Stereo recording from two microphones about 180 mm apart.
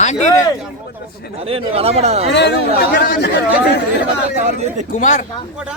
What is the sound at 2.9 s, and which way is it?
Speech, 65° left (ahead or behind).